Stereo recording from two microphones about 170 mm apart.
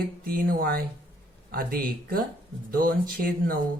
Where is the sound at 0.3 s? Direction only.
60° right (ahead or behind).